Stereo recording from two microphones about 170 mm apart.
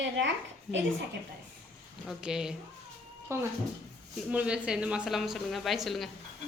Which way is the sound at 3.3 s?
15° right (ahead or behind).